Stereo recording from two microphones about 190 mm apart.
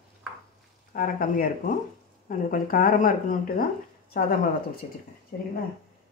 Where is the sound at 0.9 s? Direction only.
45° left (ahead or behind).